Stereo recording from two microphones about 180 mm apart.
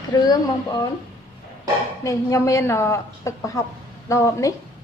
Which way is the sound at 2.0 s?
20° left (ahead or behind).